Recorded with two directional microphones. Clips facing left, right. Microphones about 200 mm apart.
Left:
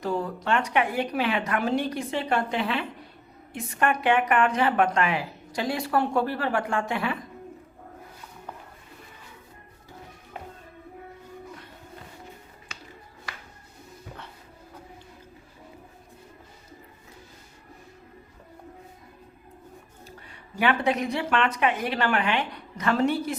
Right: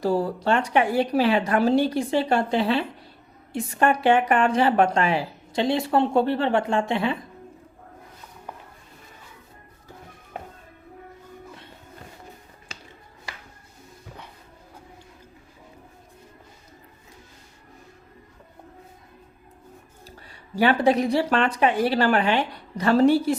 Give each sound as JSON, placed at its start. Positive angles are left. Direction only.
{"t": 0.0, "sound": "speech", "side_deg": -35}
{"t": 20.6, "sound": "speech", "side_deg": -35}